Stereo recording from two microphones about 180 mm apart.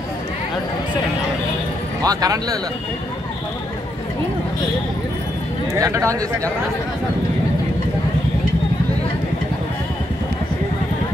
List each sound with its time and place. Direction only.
2.0 s speech: 20° right (ahead or behind)
5.7 s speech: 15° right (ahead or behind)